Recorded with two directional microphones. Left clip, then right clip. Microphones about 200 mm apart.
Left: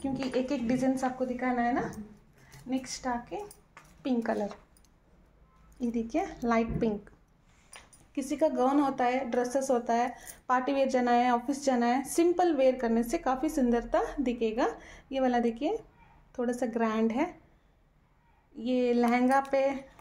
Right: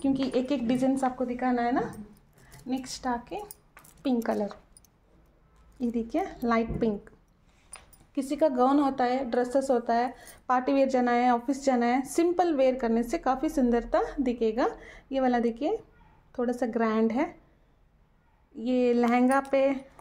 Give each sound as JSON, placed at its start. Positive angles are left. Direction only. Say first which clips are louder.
{"t": 0.5, "sound": "a woman's voice", "louder": "right 3 dB", "side_deg": -30}
{"t": 1.3, "sound": "a woman's voice", "louder": "right 2 dB", "side_deg": -45}
{"t": 4.0, "sound": "a woman's voice", "louder": "right 2 dB", "side_deg": -30}
{"t": 5.8, "sound": "a woman's voice", "louder": "right 2 dB", "side_deg": -20}
{"t": 18.5, "sound": "a woman's voice", "louder": "right 3 dB", "side_deg": -25}